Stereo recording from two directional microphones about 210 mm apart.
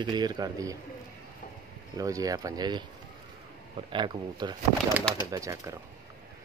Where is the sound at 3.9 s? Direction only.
20° right (ahead or behind).